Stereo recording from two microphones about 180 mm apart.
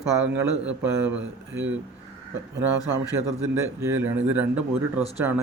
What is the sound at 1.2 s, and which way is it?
Speech, 90° right.